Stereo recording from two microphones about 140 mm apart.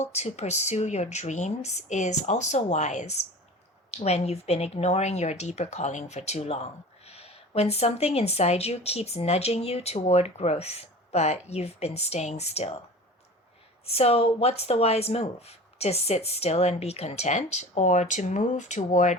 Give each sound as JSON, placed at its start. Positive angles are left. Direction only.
{"t": 0.0, "sound": "speech", "side_deg": 50}
{"t": 13.8, "sound": "speech", "side_deg": 45}